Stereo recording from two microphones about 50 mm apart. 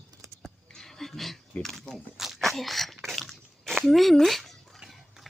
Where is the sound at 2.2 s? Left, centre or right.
Centre.